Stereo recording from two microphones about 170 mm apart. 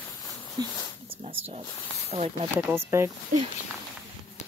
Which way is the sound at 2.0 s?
35° right (ahead or behind).